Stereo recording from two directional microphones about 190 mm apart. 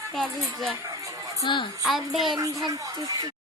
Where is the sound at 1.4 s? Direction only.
25° left (ahead or behind).